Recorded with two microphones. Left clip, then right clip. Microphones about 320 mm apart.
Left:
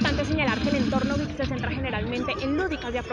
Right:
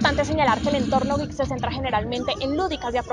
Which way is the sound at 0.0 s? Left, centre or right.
Right.